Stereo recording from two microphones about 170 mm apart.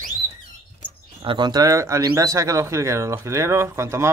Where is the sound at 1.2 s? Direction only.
25° right (ahead or behind).